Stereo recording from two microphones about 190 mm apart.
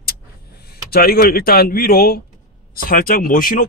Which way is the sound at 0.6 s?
55° left (ahead or behind).